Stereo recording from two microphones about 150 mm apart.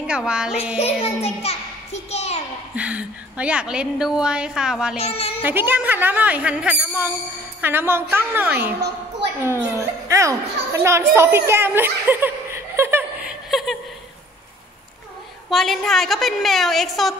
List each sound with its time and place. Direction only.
0.0 s speech: 5° right (ahead or behind)
0.7 s a child's voice: 45° left (ahead or behind)
2.7 s a woman's voice: 10° right (ahead or behind)
4.9 s speech: 40° left (ahead or behind)
5.4 s a child's voice: 15° right (ahead or behind)
13.5 s a sound: centre (ahead or behind)
15.5 s a woman's voice: centre (ahead or behind)